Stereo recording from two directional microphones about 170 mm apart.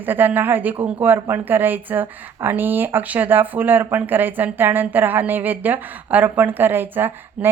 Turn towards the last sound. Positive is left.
turn(degrees=-10)  # may be behind; listen again after turning